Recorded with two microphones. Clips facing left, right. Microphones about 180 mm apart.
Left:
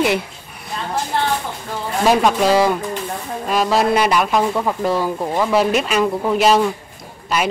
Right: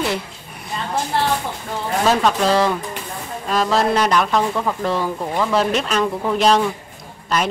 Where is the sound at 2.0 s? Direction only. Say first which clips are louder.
Left 3 dB; 10° left (ahead or behind).